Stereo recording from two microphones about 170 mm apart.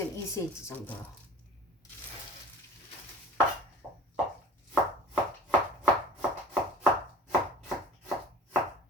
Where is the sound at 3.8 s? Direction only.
10° right (ahead or behind).